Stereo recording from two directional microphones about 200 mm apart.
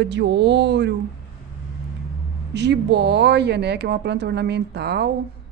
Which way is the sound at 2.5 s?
60° right (ahead or behind).